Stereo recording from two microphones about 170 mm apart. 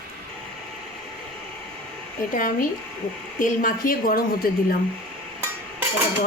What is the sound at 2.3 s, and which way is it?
A woman's voice, 55° left (ahead or behind).